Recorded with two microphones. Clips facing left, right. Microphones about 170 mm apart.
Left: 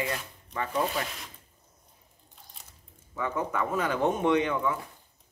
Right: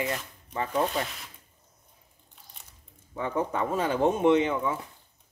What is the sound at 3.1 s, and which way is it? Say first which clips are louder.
Speech: right 2 dB; 30° right (ahead or behind).